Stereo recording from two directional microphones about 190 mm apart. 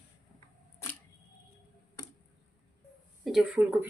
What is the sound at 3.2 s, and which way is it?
Speech, centre (ahead or behind).